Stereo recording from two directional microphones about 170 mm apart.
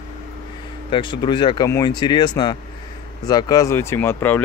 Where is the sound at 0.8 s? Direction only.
30° left (ahead or behind).